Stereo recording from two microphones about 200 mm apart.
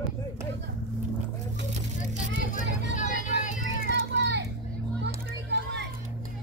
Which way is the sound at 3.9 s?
60° right (ahead or behind).